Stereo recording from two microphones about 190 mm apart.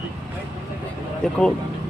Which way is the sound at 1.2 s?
5° left (ahead or behind).